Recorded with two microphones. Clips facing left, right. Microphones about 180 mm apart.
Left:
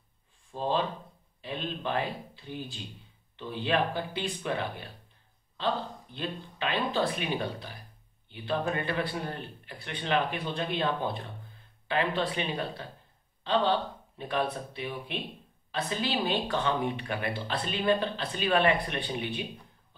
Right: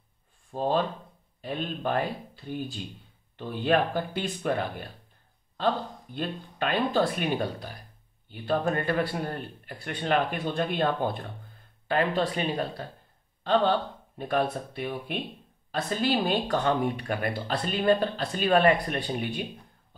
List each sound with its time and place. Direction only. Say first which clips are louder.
0.5 s speech: right 3 dB; 45° right (ahead or behind)
6.1 s speech: right 4 dB; 50° right (ahead or behind)